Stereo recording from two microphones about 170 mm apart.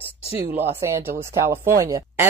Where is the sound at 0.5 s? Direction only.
15° right (ahead or behind).